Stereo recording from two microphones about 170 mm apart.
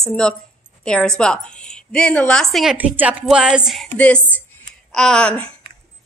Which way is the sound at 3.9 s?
10° left (ahead or behind).